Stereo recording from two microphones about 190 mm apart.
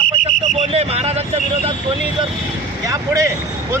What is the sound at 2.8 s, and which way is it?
Speech, 15° right (ahead or behind).